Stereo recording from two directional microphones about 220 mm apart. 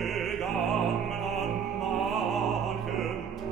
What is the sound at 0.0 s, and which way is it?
Music, centre (ahead or behind).